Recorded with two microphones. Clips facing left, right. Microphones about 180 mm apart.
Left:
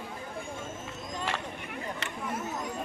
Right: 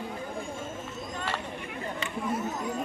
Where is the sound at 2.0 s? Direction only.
75° left (ahead or behind).